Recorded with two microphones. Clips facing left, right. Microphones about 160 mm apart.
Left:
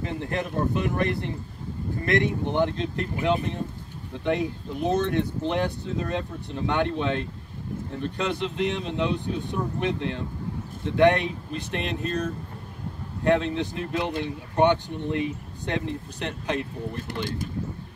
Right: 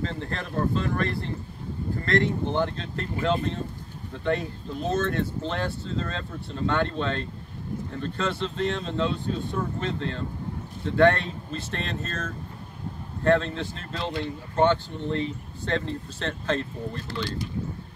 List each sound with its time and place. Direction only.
0.0 s speech: 15° left (ahead or behind)